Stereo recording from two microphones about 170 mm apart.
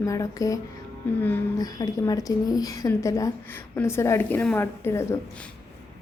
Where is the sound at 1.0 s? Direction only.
10° left (ahead or behind).